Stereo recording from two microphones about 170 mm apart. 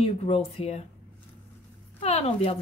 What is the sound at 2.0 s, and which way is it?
Speech, 35° left (ahead or behind).